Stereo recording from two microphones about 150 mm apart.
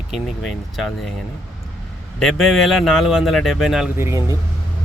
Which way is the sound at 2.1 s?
Centre (ahead or behind).